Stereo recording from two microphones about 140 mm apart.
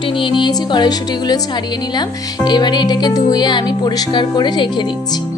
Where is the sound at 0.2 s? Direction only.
35° left (ahead or behind).